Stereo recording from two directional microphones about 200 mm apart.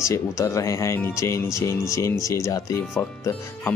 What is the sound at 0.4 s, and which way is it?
Speech, 15° left (ahead or behind).